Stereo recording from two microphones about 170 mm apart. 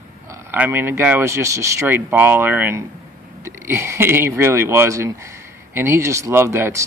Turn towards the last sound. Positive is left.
turn(degrees=-15)  # may be behind; listen again after turning